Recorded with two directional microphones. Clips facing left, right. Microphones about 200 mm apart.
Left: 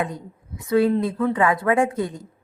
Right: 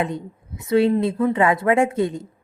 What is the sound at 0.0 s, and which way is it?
A woman's voice, 25° right (ahead or behind).